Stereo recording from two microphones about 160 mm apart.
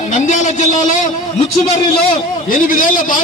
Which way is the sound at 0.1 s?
50° left (ahead or behind).